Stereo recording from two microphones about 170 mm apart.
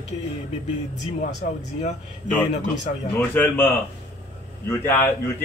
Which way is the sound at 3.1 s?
10° left (ahead or behind).